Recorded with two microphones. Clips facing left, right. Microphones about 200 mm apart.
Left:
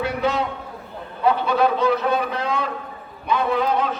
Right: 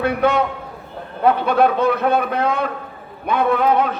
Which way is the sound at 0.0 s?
55° right (ahead or behind).